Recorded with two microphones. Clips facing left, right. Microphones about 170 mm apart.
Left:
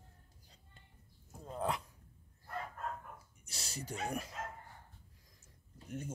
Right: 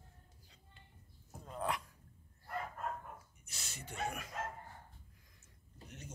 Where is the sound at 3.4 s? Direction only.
35° left (ahead or behind).